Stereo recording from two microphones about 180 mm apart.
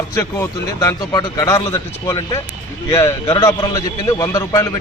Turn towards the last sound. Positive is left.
turn(degrees=15)  # may be behind; listen again after turning